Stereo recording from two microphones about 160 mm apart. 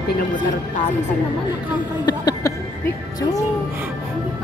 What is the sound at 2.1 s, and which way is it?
Speech, 20° left (ahead or behind).